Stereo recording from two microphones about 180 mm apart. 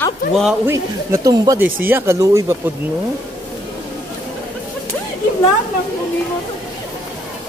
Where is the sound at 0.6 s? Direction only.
20° right (ahead or behind).